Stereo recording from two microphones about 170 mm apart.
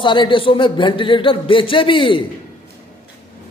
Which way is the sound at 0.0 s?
30° left (ahead or behind).